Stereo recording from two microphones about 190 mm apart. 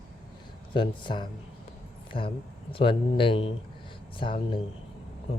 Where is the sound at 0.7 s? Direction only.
25° left (ahead or behind).